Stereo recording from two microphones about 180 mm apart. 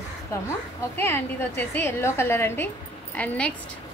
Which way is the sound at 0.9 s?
10° left (ahead or behind).